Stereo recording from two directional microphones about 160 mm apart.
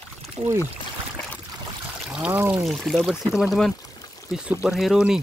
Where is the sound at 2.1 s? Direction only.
5° right (ahead or behind).